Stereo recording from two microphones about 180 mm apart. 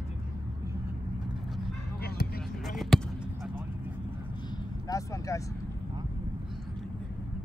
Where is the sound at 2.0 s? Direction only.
60° left (ahead or behind).